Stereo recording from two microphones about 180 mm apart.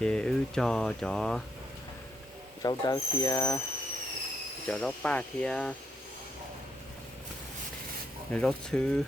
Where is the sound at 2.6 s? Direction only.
20° left (ahead or behind).